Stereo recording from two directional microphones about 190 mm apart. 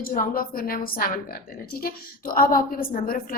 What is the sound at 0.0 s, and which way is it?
A woman's voice, 50° left (ahead or behind).